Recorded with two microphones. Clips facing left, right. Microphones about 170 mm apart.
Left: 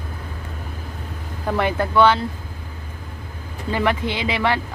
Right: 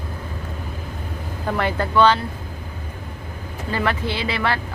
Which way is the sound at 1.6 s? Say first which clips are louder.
Left 1 dB; 15° left (ahead or behind).